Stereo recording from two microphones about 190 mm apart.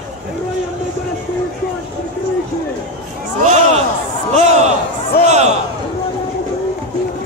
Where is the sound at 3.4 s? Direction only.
35° right (ahead or behind).